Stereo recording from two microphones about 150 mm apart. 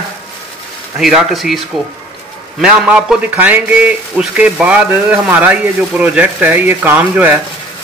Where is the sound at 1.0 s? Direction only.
Centre (ahead or behind).